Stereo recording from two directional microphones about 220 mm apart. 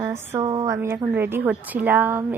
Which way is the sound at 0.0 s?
15° right (ahead or behind).